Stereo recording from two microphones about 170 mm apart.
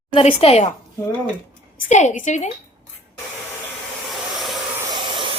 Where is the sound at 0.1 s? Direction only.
35° left (ahead or behind).